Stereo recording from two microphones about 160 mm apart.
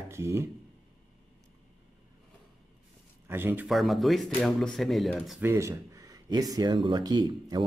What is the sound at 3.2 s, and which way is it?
Speech, 15° right (ahead or behind).